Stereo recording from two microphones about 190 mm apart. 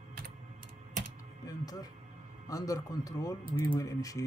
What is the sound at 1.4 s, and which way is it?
A man's voice, 20° left (ahead or behind).